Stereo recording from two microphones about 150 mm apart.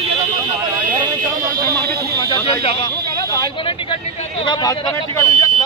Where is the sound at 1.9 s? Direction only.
90° right.